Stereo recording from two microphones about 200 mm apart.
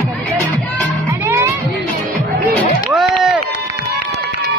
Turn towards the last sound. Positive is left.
turn(degrees=0)  # may be behind; listen again after turning